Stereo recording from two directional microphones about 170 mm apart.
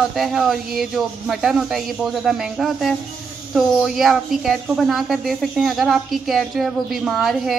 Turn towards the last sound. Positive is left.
turn(degrees=0)  # may be behind; listen again after turning